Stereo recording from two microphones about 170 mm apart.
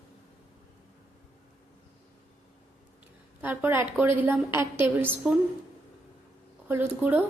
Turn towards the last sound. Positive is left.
turn(degrees=-10)  # may be behind; listen again after turning